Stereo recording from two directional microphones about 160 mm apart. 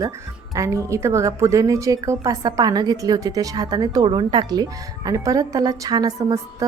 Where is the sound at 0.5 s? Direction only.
20° right (ahead or behind).